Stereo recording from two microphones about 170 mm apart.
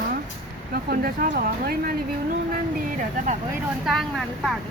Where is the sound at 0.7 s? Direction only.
60° right (ahead or behind).